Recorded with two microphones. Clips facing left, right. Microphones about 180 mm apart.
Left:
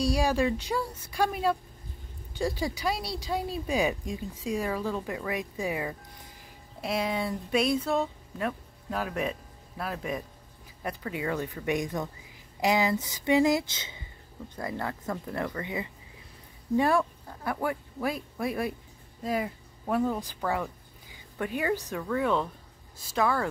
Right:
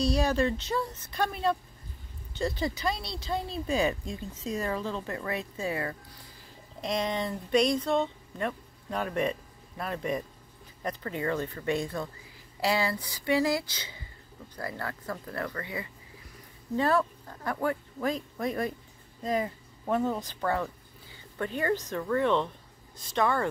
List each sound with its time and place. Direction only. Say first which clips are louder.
0.0 s speech: even; 10° left (ahead or behind)